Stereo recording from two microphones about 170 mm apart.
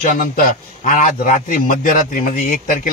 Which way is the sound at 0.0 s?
50° left (ahead or behind).